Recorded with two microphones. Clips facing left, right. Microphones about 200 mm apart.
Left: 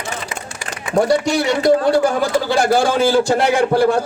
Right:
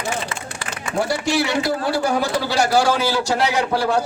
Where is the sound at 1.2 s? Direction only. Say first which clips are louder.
Left 4 dB; 45° left (ahead or behind).